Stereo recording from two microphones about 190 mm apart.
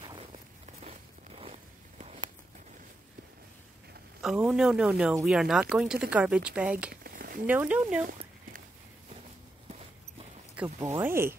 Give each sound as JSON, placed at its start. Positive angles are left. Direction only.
{"t": 0.0, "sound": "walk", "side_deg": -25}
{"t": 0.8, "sound": "zipper", "side_deg": -30}
{"t": 4.2, "sound": "speech", "side_deg": -5}
{"t": 6.9, "sound": "a sound", "side_deg": -50}
{"t": 7.4, "sound": "speech", "side_deg": -5}
{"t": 8.0, "sound": "a sound", "side_deg": -45}
{"t": 10.5, "sound": "speech", "side_deg": -5}